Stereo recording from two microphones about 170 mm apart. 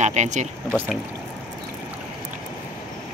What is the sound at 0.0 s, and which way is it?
Speech, 45° right (ahead or behind).